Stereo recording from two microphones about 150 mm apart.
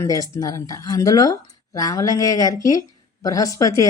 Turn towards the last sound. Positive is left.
turn(degrees=20)  # may be behind; listen again after turning